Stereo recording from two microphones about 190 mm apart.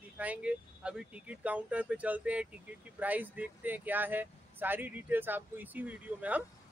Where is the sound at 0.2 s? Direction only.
5° right (ahead or behind).